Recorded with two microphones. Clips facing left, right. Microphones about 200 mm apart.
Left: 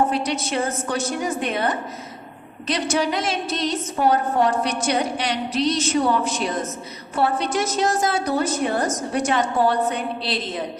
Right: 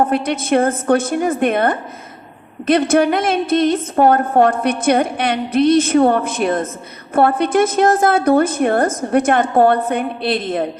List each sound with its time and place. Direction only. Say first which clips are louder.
0.1 s a woman's voice: right 7 dB; 55° right (ahead or behind)